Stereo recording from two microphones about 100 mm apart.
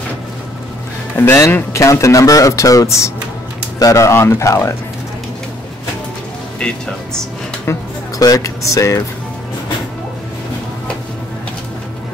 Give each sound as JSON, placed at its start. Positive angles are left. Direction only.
{"t": 1.1, "sound": "speech", "side_deg": 25}
{"t": 8.2, "sound": "speech", "side_deg": 35}